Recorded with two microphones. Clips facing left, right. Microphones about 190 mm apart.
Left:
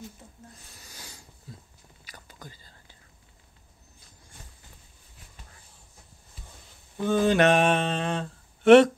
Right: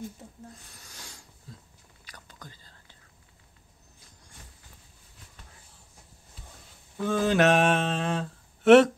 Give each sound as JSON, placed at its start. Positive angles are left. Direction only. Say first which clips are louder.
{"t": 0.7, "sound": "a sound", "louder": "left 1 dB", "side_deg": 5}
{"t": 2.0, "sound": "whispering", "louder": "left 2 dB", "side_deg": 5}
{"t": 7.0, "sound": "mantra", "louder": "left 2 dB", "side_deg": 0}